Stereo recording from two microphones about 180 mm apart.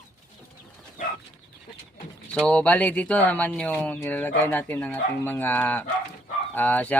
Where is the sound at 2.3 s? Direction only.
5° left (ahead or behind).